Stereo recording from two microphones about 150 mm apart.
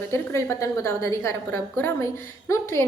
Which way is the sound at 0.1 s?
20° left (ahead or behind).